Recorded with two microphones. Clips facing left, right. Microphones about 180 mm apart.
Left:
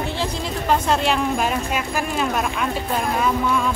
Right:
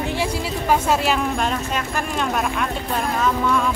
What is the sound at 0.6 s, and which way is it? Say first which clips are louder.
Speech: even; 5° right (ahead or behind).